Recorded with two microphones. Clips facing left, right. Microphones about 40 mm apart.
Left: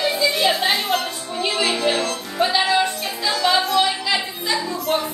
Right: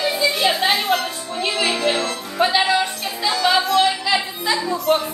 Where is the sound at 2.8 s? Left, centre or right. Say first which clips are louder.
Left 1 dB; centre.